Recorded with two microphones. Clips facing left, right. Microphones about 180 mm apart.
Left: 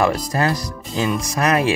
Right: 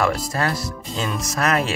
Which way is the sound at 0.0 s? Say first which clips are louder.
Left 3 dB; 15° left (ahead or behind).